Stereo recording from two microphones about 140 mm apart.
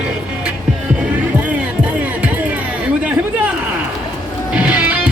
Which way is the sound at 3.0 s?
10° right (ahead or behind).